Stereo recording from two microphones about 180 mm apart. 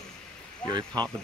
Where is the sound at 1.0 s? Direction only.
25° right (ahead or behind).